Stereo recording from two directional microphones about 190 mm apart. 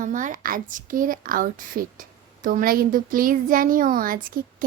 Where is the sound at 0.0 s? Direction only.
45° right (ahead or behind).